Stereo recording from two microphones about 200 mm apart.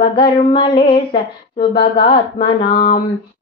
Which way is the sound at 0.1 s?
25° left (ahead or behind).